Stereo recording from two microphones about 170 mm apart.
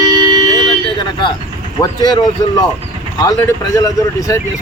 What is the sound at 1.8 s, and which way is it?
Speech, 25° left (ahead or behind).